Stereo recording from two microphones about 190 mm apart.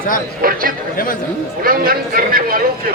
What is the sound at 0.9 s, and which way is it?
Speech, 45° left (ahead or behind).